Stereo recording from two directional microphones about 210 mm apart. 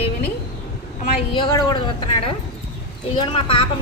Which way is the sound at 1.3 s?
25° left (ahead or behind).